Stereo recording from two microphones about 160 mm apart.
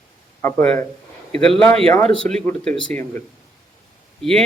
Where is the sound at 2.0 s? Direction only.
40° right (ahead or behind).